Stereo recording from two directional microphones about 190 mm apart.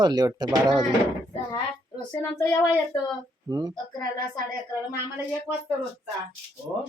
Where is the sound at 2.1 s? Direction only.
15° left (ahead or behind).